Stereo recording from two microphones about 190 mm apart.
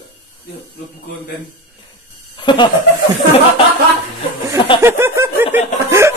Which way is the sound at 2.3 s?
25° left (ahead or behind).